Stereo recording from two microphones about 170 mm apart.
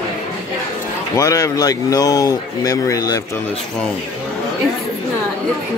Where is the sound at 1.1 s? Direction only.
20° left (ahead or behind).